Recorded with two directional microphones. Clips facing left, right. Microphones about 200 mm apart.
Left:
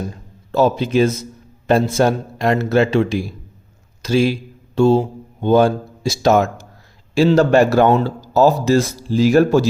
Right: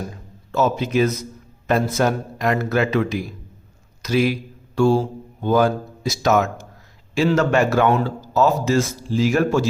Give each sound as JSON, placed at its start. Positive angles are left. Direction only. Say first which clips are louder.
{"t": 0.5, "sound": "a man's voice", "louder": "left 4 dB", "side_deg": 30}